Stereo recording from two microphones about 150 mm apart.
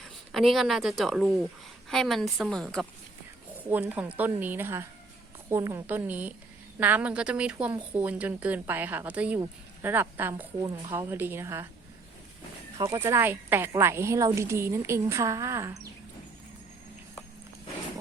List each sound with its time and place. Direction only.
0.0 s a woman's voice: centre (ahead or behind)
3.7 s speech: 10° right (ahead or behind)
12.7 s speech: 25° right (ahead or behind)
13.0 s a woman's voice: 15° right (ahead or behind)